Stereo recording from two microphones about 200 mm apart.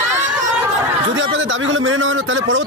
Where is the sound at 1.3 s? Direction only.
70° right (ahead or behind).